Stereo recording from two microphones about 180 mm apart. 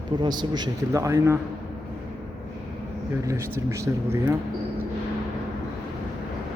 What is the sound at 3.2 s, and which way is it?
Speech, 15° right (ahead or behind).